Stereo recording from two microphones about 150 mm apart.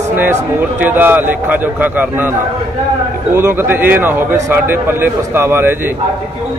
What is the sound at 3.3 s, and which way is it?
A man's voice, 15° right (ahead or behind).